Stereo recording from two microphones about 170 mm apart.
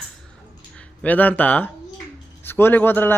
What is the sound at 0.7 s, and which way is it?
A man's voice, 5° left (ahead or behind).